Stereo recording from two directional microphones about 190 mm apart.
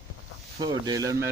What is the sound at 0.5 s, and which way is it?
Speech, 20° right (ahead or behind).